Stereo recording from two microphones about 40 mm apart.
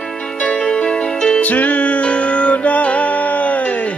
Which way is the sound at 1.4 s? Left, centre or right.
Left.